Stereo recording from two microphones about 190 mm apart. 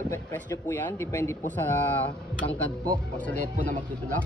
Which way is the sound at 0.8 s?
15° left (ahead or behind).